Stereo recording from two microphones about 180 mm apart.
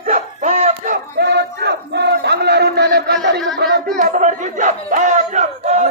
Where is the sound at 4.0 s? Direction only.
45° right (ahead or behind).